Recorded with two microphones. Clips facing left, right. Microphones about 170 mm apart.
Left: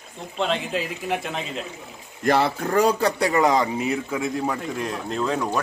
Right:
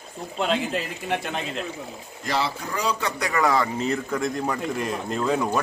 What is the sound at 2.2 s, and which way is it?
A man's voice, 55° left (ahead or behind).